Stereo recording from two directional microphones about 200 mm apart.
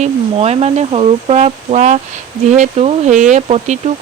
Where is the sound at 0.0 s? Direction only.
30° right (ahead or behind).